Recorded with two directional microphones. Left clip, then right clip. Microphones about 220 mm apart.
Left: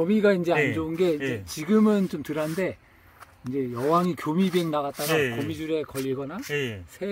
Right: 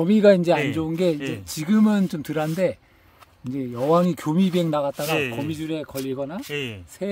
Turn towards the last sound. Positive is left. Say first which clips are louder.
# left 1 dB
turn(degrees=0)  # may be behind; listen again after turning